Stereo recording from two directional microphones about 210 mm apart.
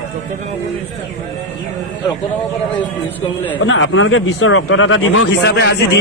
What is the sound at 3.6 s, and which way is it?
A man's voice, 65° left (ahead or behind).